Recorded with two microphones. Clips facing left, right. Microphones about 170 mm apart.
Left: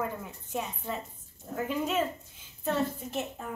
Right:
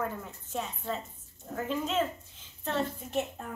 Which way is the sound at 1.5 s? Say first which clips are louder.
Left 1 dB; 10° left (ahead or behind).